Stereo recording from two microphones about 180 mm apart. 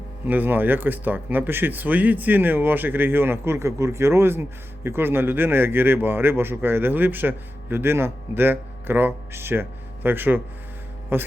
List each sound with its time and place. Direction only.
0.3 s speech: 10° right (ahead or behind)